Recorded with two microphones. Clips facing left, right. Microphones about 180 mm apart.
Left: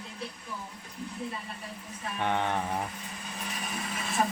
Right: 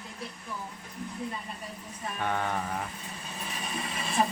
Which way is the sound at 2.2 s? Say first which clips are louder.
Left 2 dB; 20° left (ahead or behind).